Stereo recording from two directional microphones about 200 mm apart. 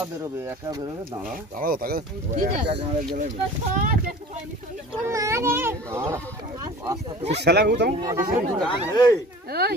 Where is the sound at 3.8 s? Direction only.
45° right (ahead or behind).